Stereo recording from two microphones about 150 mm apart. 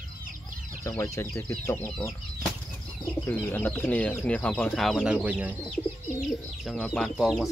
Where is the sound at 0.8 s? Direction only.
20° left (ahead or behind).